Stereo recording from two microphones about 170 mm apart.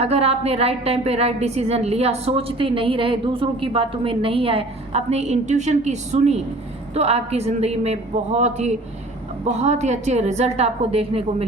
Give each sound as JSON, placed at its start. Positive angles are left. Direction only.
{"t": 0.0, "sound": "a woman's voice", "side_deg": -35}